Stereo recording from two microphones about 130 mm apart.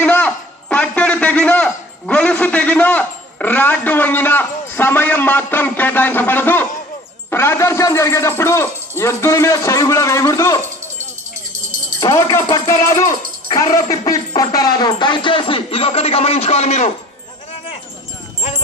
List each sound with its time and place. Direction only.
0.0 s a man's voice: 15° left (ahead or behind)
11.9 s a man's voice: 25° left (ahead or behind); by 16.9 s 60° left (ahead or behind)